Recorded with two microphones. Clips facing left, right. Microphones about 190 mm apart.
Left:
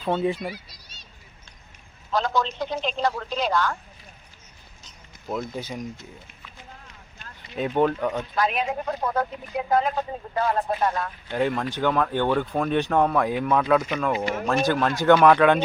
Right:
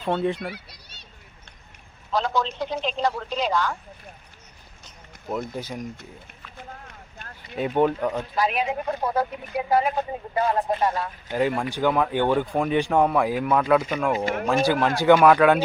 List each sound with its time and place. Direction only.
0.0 s speech: 5° left (ahead or behind)
0.5 s a sound: 60° right (ahead or behind)
2.1 s a sound: 10° right (ahead or behind)
3.0 s speech: 5° right (ahead or behind)
5.4 s speech: 10° right (ahead or behind)
6.6 s vehicle: 55° right (ahead or behind)
7.5 s speech: 5° right (ahead or behind)